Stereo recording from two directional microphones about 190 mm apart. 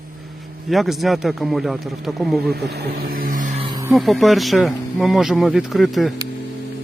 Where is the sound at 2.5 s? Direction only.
60° right (ahead or behind).